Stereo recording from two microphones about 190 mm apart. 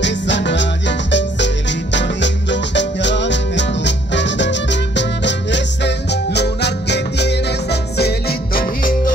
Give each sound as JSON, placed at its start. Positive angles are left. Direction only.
{"t": 0.0, "sound": "music", "side_deg": 70}